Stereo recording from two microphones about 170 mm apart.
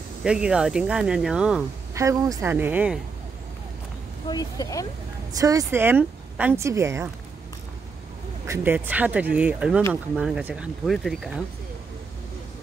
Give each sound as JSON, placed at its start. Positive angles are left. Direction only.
{"t": 0.2, "sound": "speech", "side_deg": -5}
{"t": 2.0, "sound": "speech", "side_deg": -20}
{"t": 4.3, "sound": "speech", "side_deg": 20}
{"t": 5.4, "sound": "speech", "side_deg": -20}
{"t": 8.5, "sound": "speech", "side_deg": -10}